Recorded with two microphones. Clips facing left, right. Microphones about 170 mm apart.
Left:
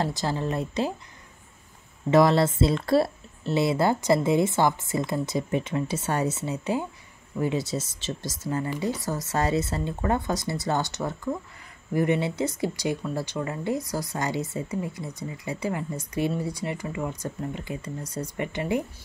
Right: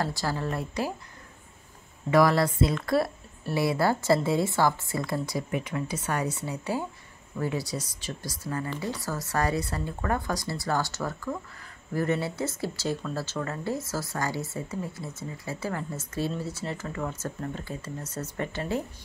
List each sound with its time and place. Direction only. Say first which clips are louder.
0.0 s speech: left 2 dB; 20° left (ahead or behind)
2.0 s speech: left 2 dB; 25° left (ahead or behind)